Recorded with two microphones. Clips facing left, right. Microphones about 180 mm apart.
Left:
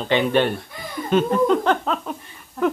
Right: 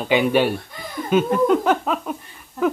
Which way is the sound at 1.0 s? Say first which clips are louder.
Right 1 dB; 5° right (ahead or behind).